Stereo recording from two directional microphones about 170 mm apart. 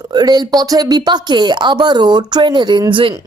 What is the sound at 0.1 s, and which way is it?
A woman's voice, 25° right (ahead or behind).